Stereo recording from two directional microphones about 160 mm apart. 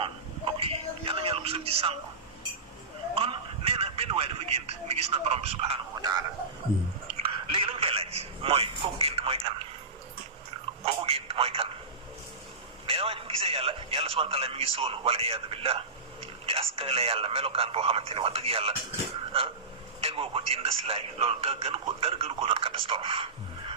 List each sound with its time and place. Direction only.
0.0 s a sound: 35° right (ahead or behind)
3.2 s a sound: 35° right (ahead or behind)
6.0 s speech: 25° right (ahead or behind)
7.2 s speech: 35° right (ahead or behind)
10.8 s a man's voice: 35° right (ahead or behind)
12.8 s a man's voice: 35° right (ahead or behind)
20.0 s a man's voice: 35° right (ahead or behind)